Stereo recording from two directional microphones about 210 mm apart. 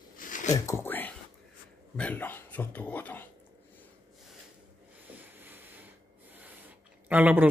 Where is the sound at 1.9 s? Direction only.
5° left (ahead or behind).